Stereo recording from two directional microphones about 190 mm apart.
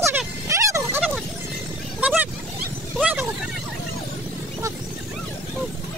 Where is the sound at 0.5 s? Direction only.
15° right (ahead or behind).